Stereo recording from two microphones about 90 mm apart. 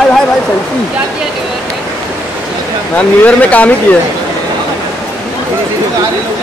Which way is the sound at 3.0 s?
15° left (ahead or behind).